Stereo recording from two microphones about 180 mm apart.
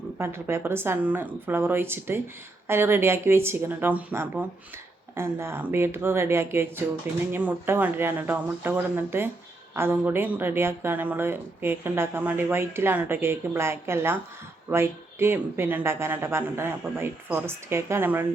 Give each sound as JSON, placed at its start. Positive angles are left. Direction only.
{"t": 0.2, "sound": "speech", "side_deg": -15}